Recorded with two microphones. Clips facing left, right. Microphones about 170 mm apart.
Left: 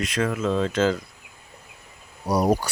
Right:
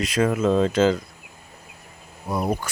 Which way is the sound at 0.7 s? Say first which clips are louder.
Right 3 dB; centre (ahead or behind).